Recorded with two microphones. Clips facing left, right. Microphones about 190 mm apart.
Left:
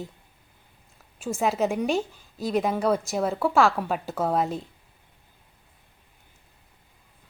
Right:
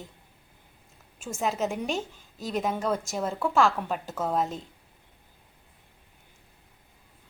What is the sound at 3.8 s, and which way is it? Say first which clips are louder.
Speech: left 4 dB; 35° left (ahead or behind).